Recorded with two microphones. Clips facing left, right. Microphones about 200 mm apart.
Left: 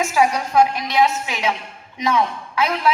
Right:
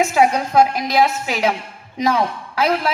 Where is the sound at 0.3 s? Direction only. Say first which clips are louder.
Right 2 dB; 35° right (ahead or behind).